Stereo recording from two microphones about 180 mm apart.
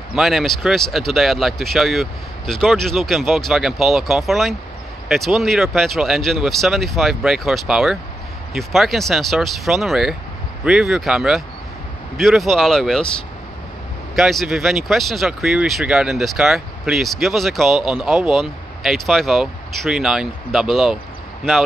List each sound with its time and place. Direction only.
0.1 s speech: centre (ahead or behind)
14.1 s speech: centre (ahead or behind)